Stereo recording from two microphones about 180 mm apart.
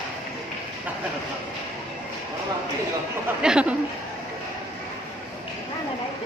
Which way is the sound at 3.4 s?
5° right (ahead or behind).